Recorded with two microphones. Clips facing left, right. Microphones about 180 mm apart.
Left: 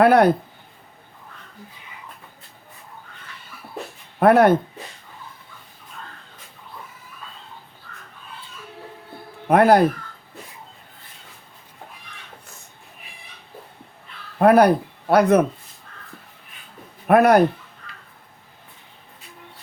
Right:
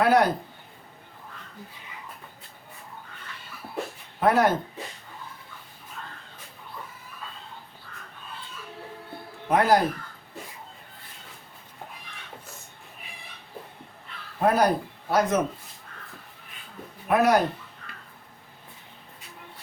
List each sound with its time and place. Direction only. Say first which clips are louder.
0.0 s speech: left 6 dB; 60° left (ahead or behind)
4.2 s speech: left 7 dB; 60° left (ahead or behind)
9.5 s speech: left 6 dB; 60° left (ahead or behind)
14.3 s speech: left 8 dB; 65° left (ahead or behind)
17.1 s speech: left 6 dB; 55° left (ahead or behind)